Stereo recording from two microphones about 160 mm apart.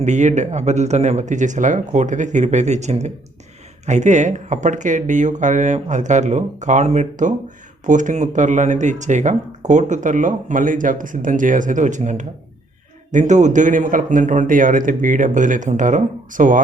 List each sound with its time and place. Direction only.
0.0 s speech: 50° right (ahead or behind)